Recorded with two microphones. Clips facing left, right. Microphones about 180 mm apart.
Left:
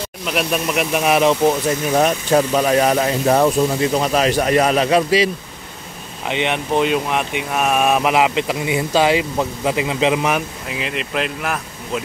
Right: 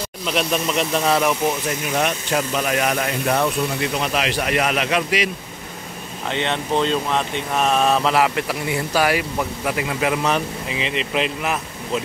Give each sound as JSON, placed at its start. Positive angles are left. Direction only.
{"t": 0.2, "sound": "speech", "side_deg": 5}
{"t": 2.0, "sound": "speech", "side_deg": 35}
{"t": 6.2, "sound": "speech", "side_deg": 15}
{"t": 10.7, "sound": "speech", "side_deg": 0}